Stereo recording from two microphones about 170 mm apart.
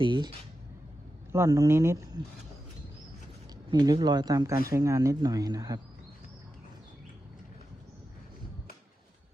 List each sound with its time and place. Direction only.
0.0 s speech: 30° right (ahead or behind)
1.3 s speech: 20° right (ahead or behind)
3.7 s speech: 25° right (ahead or behind)